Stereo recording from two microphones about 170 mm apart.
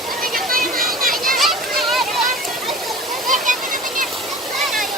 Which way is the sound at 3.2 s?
50° right (ahead or behind).